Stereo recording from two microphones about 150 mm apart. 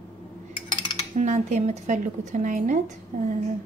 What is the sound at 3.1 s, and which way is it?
Speech, 75° right (ahead or behind).